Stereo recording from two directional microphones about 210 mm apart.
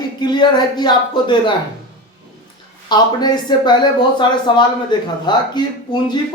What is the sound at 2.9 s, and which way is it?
Speech, 20° left (ahead or behind).